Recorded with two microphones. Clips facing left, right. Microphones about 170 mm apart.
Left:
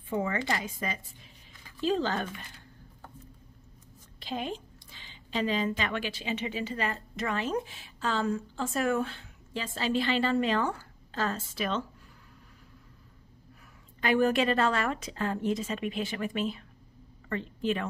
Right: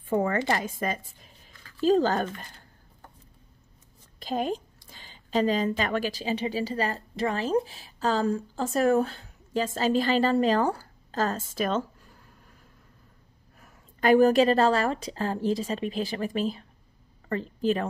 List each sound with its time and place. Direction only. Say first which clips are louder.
0.1 s a woman's voice: right 5 dB; 50° right (ahead or behind)
4.2 s a woman's voice: right 6 dB; 45° right (ahead or behind)
14.0 s a woman's voice: right 6 dB; 40° right (ahead or behind)